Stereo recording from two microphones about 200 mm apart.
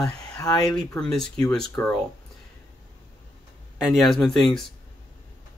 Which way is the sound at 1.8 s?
15° left (ahead or behind).